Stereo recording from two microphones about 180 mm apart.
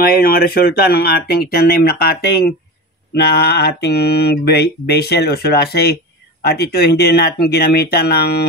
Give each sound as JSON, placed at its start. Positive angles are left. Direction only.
{"t": 0.0, "sound": "mantra", "side_deg": 55}